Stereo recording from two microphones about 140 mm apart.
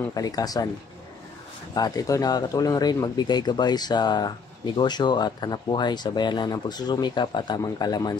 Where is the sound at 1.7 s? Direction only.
25° left (ahead or behind).